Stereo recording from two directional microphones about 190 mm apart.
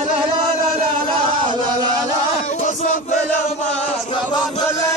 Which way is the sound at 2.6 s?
40° left (ahead or behind).